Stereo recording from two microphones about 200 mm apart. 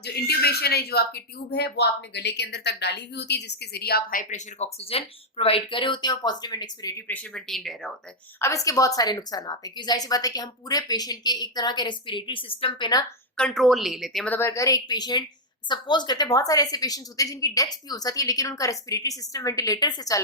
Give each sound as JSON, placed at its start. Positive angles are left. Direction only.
{"t": 0.0, "sound": "speech", "side_deg": 55}
{"t": 7.1, "sound": "a woman's voice", "side_deg": 5}
{"t": 8.4, "sound": "a woman's voice", "side_deg": 15}
{"t": 13.3, "sound": "a woman's voice", "side_deg": 5}
{"t": 14.3, "sound": "a woman's voice", "side_deg": 15}